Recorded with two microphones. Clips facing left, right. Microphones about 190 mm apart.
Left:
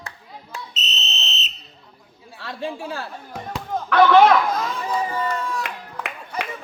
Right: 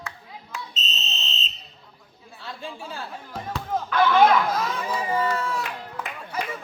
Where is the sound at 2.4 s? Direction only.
75° left (ahead or behind).